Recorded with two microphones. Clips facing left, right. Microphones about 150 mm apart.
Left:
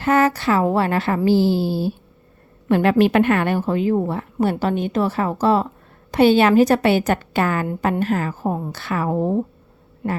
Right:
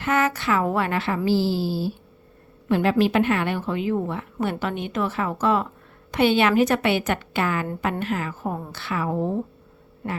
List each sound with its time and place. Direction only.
0.0 s a woman's voice: 35° left (ahead or behind)